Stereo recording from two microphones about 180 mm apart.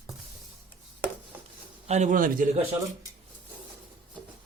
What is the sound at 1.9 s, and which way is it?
Speech, 40° right (ahead or behind).